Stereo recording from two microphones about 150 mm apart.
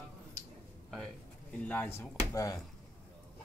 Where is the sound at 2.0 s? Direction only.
25° left (ahead or behind).